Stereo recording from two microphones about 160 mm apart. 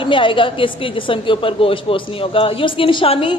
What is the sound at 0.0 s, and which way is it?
A woman's voice, 30° left (ahead or behind).